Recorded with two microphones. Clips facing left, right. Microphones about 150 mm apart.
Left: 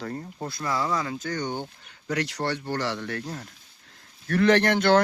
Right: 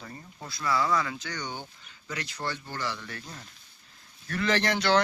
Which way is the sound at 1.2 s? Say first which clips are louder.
Left 7 dB; 50° left (ahead or behind).